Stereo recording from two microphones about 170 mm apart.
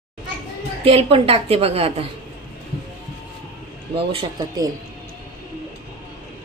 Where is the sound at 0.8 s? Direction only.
35° right (ahead or behind).